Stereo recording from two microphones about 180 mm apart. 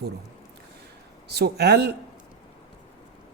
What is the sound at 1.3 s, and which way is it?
Speech, 65° right (ahead or behind).